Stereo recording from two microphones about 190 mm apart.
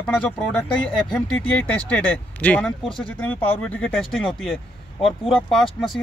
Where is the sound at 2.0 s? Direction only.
10° left (ahead or behind).